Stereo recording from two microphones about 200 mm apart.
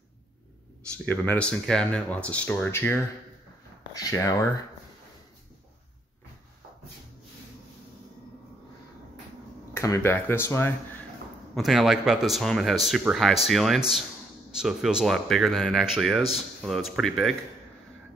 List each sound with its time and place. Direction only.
0.9 s speech: 5° left (ahead or behind)
3.9 s speech: 15° left (ahead or behind)
9.8 s speech: 15° left (ahead or behind)
11.5 s speech: centre (ahead or behind)